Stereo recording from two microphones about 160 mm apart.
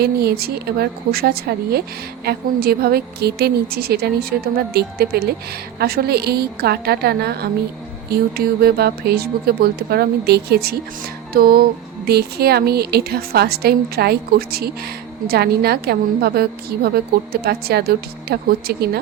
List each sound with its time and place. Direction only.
0.0 s a woman's voice: 80° right
11.3 s a woman's voice: 70° right (ahead or behind)
12.0 s a woman's voice: 80° right